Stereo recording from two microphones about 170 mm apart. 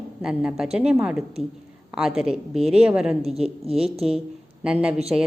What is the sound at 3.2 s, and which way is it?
Speech, 35° right (ahead or behind).